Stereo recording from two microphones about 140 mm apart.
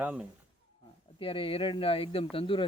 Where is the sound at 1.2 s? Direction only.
40° left (ahead or behind).